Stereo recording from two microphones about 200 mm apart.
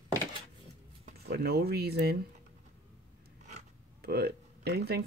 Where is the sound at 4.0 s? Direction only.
55° right (ahead or behind).